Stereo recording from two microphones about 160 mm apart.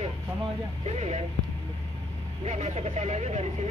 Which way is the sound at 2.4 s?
40° right (ahead or behind).